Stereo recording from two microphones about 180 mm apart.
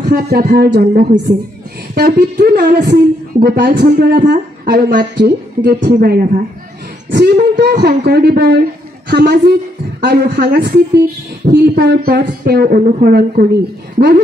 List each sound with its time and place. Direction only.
0.1 s a woman's voice: 55° right (ahead or behind)